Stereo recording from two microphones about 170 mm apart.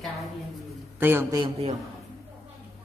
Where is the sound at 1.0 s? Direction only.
15° right (ahead or behind).